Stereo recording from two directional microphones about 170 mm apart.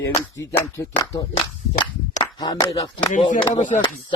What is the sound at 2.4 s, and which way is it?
Music, 25° left (ahead or behind).